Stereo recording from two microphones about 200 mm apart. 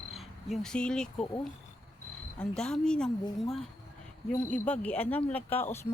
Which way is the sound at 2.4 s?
5° left (ahead or behind).